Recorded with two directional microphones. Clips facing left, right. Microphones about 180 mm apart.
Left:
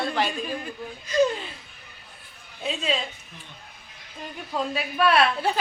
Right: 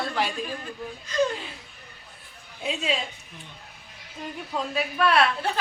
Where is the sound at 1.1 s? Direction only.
10° left (ahead or behind).